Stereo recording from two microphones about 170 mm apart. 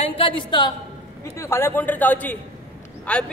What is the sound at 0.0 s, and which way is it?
Speech, 30° left (ahead or behind).